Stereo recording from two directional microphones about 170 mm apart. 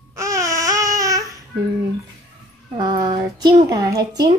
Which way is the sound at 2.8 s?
20° right (ahead or behind).